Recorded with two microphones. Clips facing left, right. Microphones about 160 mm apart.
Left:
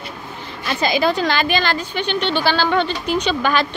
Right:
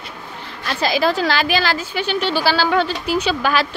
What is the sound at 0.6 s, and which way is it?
A woman's voice, centre (ahead or behind).